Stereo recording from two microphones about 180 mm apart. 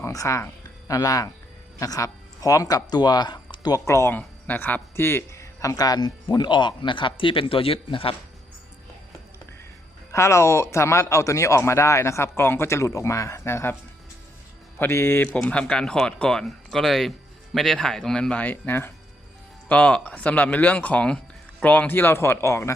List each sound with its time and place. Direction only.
0.0 s speech: 15° left (ahead or behind)
10.1 s a man's voice: 15° left (ahead or behind)
14.8 s a man's voice: 15° left (ahead or behind)